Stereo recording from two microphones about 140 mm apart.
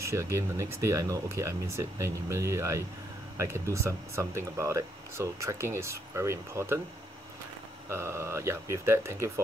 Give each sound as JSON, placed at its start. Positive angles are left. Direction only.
{"t": 0.1, "sound": "speech", "side_deg": -20}
{"t": 7.9, "sound": "speech", "side_deg": -15}